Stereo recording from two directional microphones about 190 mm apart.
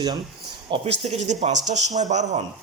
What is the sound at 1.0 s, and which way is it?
Speech, 35° right (ahead or behind).